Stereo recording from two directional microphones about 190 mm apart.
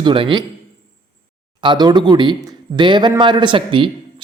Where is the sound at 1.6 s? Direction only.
20° right (ahead or behind).